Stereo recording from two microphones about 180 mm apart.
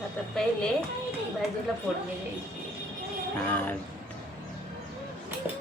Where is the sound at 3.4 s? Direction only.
10° left (ahead or behind).